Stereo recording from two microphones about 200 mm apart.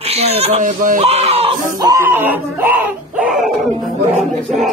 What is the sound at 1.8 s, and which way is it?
Speech, 15° right (ahead or behind).